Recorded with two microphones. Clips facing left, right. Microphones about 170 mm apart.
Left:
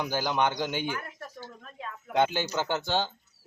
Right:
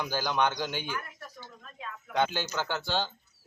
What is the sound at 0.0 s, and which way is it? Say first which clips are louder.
Speech: left 1 dB; 15° left (ahead or behind).